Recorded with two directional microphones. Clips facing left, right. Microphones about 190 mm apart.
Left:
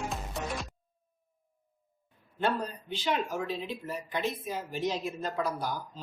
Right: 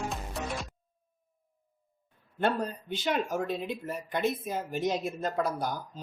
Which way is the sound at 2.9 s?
50° right (ahead or behind).